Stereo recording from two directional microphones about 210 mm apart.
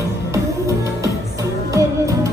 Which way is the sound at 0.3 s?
15° right (ahead or behind).